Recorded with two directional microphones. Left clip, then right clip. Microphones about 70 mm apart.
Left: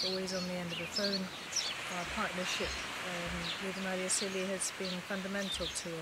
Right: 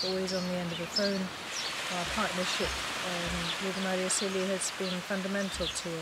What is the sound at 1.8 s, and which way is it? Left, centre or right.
Speech, right.